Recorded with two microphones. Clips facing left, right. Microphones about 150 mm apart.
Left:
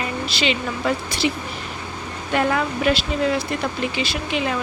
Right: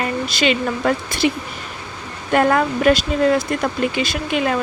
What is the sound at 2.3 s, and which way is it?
Speech, 50° right (ahead or behind).